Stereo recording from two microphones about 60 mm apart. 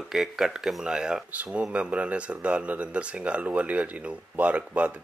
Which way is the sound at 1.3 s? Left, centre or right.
Right.